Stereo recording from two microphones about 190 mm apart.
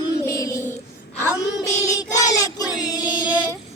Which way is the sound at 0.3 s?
15° left (ahead or behind).